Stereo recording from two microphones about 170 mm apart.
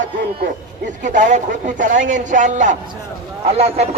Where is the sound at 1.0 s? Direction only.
50° right (ahead or behind).